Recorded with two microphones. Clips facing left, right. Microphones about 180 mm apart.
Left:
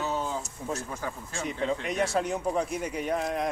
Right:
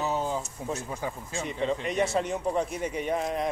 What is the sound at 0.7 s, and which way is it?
Speech, 20° right (ahead or behind).